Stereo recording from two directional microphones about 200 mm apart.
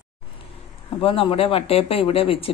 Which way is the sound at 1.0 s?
30° left (ahead or behind).